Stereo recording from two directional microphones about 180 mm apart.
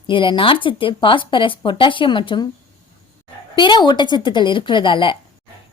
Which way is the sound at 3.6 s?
25° left (ahead or behind).